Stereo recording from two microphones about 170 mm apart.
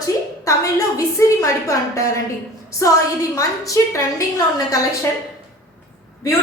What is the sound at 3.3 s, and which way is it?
A woman's voice, 20° left (ahead or behind).